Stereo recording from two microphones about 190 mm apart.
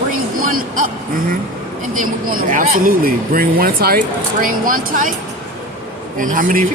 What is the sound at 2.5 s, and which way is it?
Speech, 50° right (ahead or behind).